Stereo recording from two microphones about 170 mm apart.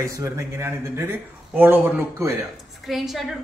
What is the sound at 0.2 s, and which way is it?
A man's voice, 15° right (ahead or behind).